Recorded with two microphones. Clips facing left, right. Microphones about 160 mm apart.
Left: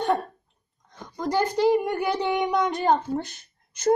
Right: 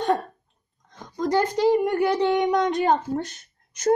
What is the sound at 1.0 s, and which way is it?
Speech, 5° left (ahead or behind).